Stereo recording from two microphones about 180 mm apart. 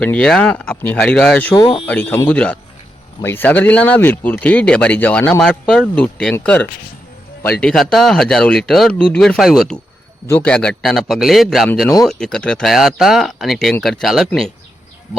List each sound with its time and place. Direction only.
0.0 s speech: 5° left (ahead or behind)
1.5 s speech: 25° left (ahead or behind)
1.9 s speech: 10° left (ahead or behind)